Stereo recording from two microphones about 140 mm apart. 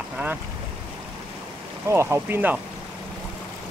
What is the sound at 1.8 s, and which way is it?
Speech, 20° right (ahead or behind).